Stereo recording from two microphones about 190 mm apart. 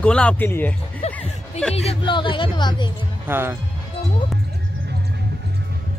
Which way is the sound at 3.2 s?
10° right (ahead or behind).